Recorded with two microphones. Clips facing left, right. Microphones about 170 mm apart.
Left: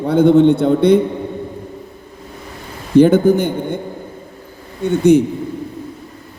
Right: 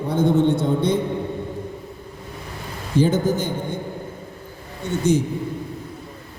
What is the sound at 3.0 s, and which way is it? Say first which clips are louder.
Speech: left 9 dB; 60° left (ahead or behind).